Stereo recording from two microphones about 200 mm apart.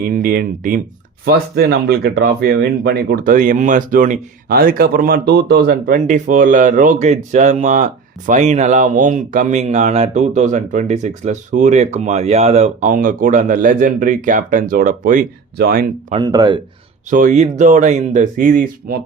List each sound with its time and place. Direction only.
0.0 s speech: 45° right (ahead or behind)
16.1 s speech: 20° right (ahead or behind)
17.1 s speech: 40° right (ahead or behind)